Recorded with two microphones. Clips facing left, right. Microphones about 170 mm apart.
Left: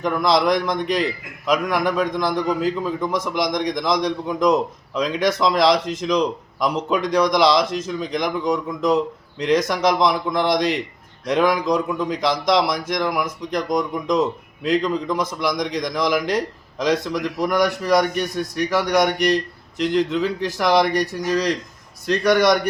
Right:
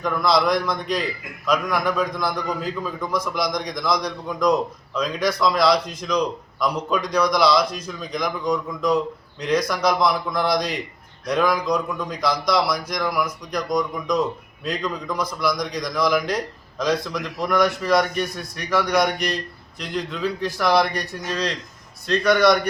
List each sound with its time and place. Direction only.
0.0 s a man's voice: 20° left (ahead or behind)
5.8 s speech: 90° left
6.7 s a man's voice: 20° left (ahead or behind)